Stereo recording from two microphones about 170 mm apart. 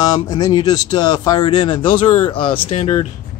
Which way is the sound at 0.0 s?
25° left (ahead or behind).